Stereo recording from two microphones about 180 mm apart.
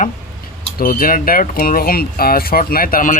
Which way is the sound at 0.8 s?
50° left (ahead or behind).